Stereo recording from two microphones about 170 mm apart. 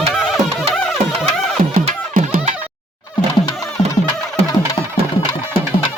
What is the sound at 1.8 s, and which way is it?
Music, 45° right (ahead or behind).